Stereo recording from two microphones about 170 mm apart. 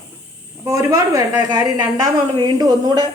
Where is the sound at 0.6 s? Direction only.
20° right (ahead or behind).